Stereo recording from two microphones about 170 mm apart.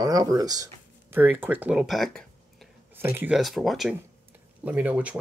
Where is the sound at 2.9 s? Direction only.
10° right (ahead or behind).